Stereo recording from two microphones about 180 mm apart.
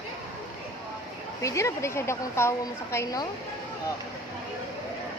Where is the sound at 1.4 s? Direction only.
15° left (ahead or behind).